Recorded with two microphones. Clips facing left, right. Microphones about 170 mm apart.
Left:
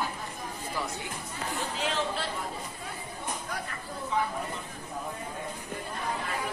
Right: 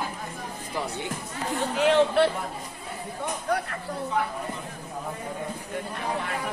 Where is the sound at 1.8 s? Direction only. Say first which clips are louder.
Right 14 dB; 65° right (ahead or behind).